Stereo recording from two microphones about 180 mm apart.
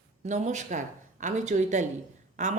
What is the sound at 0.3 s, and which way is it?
Speech, 40° right (ahead or behind).